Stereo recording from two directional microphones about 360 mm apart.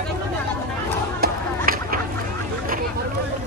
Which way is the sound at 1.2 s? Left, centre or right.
Right.